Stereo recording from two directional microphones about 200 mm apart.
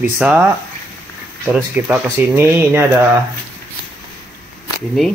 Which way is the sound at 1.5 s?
5° right (ahead or behind).